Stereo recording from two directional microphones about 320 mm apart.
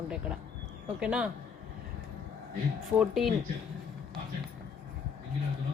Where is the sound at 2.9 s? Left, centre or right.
Centre.